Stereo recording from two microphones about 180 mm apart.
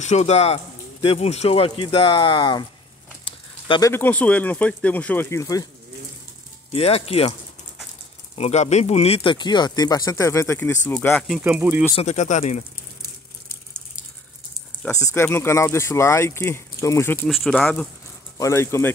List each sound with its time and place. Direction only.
0.0 s speech: 40° left (ahead or behind)
3.3 s a sound: 30° left (ahead or behind)
3.9 s speech: 10° left (ahead or behind)
6.7 s speech: 35° left (ahead or behind)
8.4 s speech: 40° left (ahead or behind); by 11.2 s 10° left (ahead or behind)
11.2 s speech: 5° right (ahead or behind)
11.9 s speech: 35° left (ahead or behind)
15.1 s speech: 15° left (ahead or behind)
17.3 s speech: 5° left (ahead or behind)
18.4 s speech: 15° left (ahead or behind)